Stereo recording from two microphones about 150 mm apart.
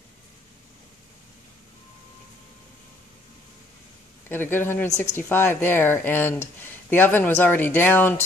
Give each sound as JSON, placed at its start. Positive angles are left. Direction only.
{"t": 4.3, "sound": "speech", "side_deg": 15}
{"t": 4.8, "sound": "a woman's voice", "side_deg": 50}
{"t": 5.1, "sound": "speech", "side_deg": 15}